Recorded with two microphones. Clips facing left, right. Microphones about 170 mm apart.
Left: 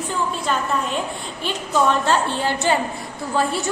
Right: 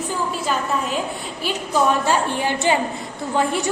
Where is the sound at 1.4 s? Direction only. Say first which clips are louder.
Even; 10° right (ahead or behind).